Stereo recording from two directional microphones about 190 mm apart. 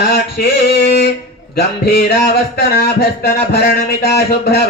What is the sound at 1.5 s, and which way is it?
Music, 60° left (ahead or behind).